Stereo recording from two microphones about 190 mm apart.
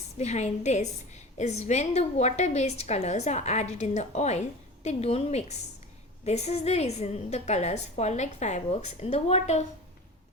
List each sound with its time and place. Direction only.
0.2 s a woman's voice: 35° left (ahead or behind)